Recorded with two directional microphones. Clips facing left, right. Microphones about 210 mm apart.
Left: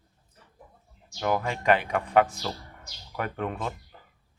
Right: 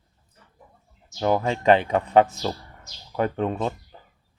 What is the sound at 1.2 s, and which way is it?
Speech, 30° right (ahead or behind).